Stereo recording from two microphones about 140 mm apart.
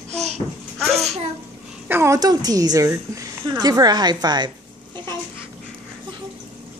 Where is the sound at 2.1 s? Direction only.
30° right (ahead or behind).